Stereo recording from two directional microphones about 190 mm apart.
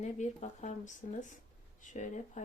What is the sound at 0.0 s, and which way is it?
Speech, 40° left (ahead or behind).